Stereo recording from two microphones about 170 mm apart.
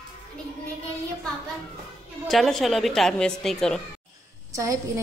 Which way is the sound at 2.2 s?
Centre (ahead or behind).